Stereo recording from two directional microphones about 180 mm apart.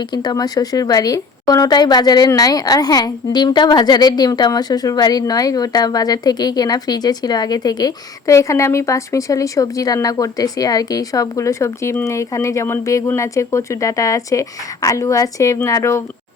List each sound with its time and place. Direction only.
0.1 s speech: 25° left (ahead or behind)